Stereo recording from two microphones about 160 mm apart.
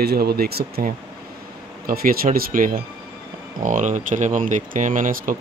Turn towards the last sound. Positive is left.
turn(degrees=-60)  # may be behind; listen again after turning